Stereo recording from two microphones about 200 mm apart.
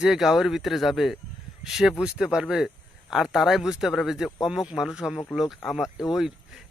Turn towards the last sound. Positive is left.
turn(degrees=0)  # may be behind; listen again after turning